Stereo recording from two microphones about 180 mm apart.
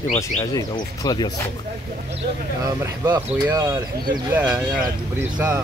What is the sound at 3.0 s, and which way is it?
Speech, 15° right (ahead or behind).